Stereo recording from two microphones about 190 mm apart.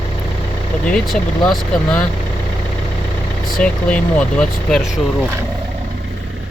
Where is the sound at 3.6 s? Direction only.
5° left (ahead or behind).